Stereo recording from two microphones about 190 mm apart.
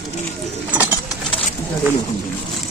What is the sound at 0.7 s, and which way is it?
Bird, 10° right (ahead or behind).